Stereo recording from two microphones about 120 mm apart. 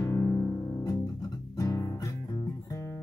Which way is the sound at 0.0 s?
25° left (ahead or behind).